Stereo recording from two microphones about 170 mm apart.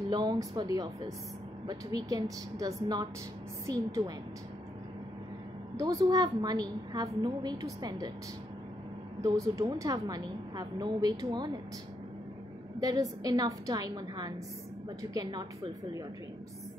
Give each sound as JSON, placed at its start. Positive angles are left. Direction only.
{"t": 0.1, "sound": "a woman's voice", "side_deg": -25}
{"t": 5.8, "sound": "a woman's voice", "side_deg": -20}
{"t": 9.2, "sound": "a woman's voice", "side_deg": -20}
{"t": 12.8, "sound": "a woman's voice", "side_deg": -20}